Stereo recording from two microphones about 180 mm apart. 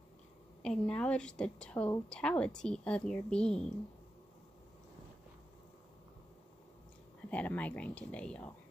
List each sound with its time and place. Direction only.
0.6 s a woman's voice: 5° left (ahead or behind)
7.2 s speech: 5° left (ahead or behind)